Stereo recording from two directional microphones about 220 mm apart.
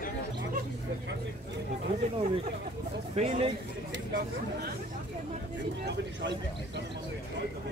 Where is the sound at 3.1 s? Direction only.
30° right (ahead or behind).